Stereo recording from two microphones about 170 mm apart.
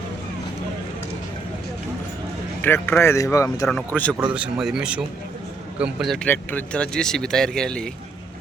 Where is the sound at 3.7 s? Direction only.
5° left (ahead or behind).